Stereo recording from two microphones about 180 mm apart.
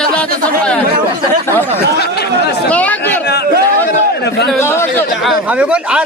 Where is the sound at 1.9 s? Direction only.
60° left (ahead or behind).